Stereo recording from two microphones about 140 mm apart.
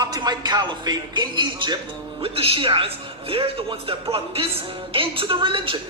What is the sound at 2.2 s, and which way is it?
A woman's voice, 40° right (ahead or behind).